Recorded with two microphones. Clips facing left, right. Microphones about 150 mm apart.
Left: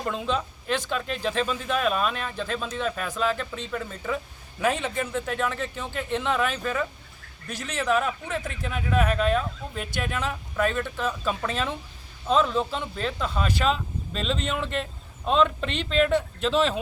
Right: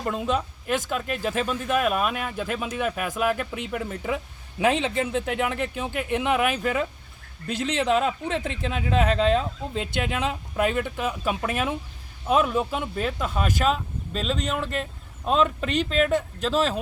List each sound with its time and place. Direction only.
0.0 s a woman's voice: 5° right (ahead or behind)
5.1 s speech: 20° right (ahead or behind); by 16.8 s centre (ahead or behind)